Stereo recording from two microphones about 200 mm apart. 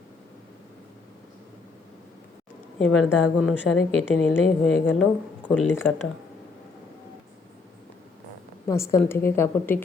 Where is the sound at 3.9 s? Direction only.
80° left.